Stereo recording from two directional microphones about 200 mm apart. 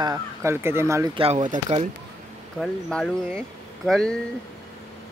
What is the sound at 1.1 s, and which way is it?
Speech, 30° right (ahead or behind).